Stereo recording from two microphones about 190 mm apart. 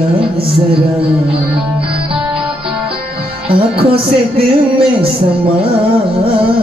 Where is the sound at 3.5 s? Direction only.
30° right (ahead or behind).